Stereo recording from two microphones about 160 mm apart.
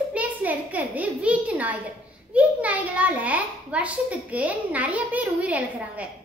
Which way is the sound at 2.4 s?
10° right (ahead or behind).